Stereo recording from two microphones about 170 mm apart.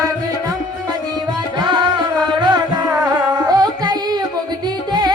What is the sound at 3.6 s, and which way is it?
Carnatic music, 25° right (ahead or behind).